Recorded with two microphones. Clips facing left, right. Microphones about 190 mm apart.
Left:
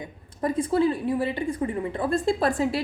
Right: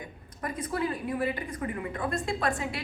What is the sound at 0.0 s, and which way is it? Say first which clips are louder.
A woman's voice: left 9 dB; 25° left (ahead or behind).